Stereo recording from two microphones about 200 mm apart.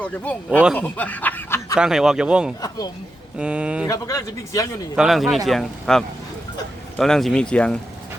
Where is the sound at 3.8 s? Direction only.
15° left (ahead or behind).